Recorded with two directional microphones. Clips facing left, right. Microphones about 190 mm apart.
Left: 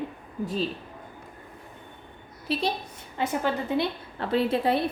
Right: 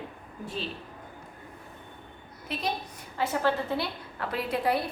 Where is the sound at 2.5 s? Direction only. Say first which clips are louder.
Left 8 dB; 30° left (ahead or behind).